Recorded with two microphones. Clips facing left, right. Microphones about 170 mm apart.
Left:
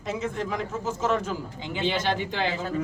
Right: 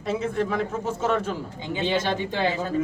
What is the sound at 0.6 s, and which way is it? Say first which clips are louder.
Speech: right 2 dB; 30° right (ahead or behind).